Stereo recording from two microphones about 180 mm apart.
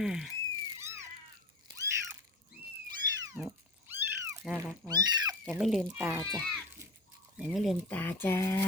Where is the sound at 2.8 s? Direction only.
20° right (ahead or behind).